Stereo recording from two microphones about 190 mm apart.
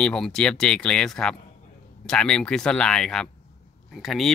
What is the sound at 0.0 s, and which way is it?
Speech, 5° left (ahead or behind).